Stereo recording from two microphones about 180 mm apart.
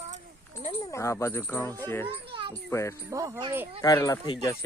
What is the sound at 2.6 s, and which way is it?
Speech, 15° left (ahead or behind).